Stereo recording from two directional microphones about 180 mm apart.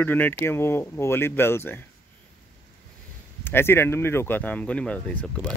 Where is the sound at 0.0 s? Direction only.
10° left (ahead or behind).